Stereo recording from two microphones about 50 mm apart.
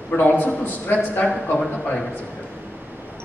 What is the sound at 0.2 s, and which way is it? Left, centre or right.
A man's voice, left.